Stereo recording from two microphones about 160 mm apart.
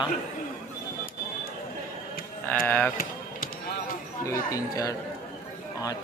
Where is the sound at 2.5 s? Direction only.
10° left (ahead or behind).